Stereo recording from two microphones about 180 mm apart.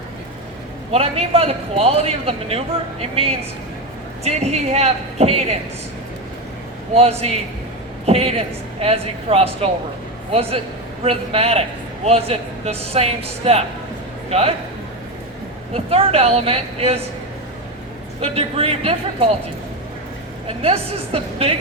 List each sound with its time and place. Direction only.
0.9 s a man's voice: 35° right (ahead or behind)
6.9 s a man's voice: 35° right (ahead or behind)
15.7 s a man's voice: 35° right (ahead or behind)
18.2 s a man's voice: 35° right (ahead or behind)
20.5 s a man's voice: 35° right (ahead or behind)